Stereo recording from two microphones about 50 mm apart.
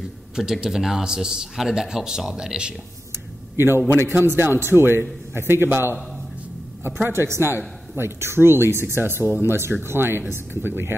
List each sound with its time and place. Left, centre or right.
0.0 s a man's voice: centre
3.5 s speech: right
7.1 s a woman's voice: right